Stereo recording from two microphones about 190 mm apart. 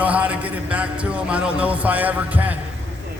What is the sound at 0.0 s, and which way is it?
Speech, 5° right (ahead or behind).